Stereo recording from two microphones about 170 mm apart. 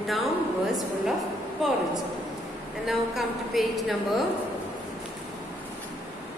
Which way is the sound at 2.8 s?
Centre (ahead or behind).